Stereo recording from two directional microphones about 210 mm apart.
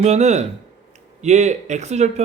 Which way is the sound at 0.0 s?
35° right (ahead or behind).